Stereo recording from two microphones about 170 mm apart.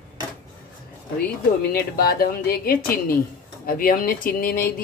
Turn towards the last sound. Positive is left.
turn(degrees=60)  # may be behind; listen again after turning